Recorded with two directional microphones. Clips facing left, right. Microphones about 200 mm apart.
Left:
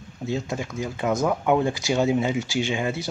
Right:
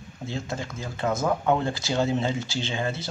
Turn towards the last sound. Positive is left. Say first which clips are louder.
# left 4 dB
turn(degrees=15)  # may be behind; listen again after turning